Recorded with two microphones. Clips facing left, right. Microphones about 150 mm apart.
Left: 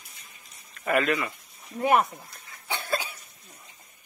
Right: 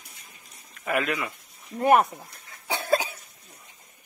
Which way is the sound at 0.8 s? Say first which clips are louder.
Left 2 dB; 10° right (ahead or behind).